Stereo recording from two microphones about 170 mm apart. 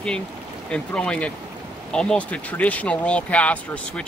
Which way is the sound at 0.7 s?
5° left (ahead or behind).